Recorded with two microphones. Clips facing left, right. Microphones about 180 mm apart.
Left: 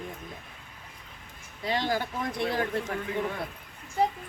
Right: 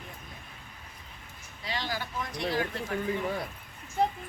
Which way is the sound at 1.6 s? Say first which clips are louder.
Left 7 dB; 50° left (ahead or behind).